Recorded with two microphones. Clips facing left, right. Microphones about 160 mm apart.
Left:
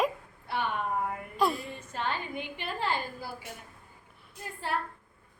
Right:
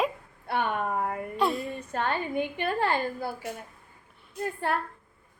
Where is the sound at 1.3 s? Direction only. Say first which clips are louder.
Right 1 dB; centre (ahead or behind).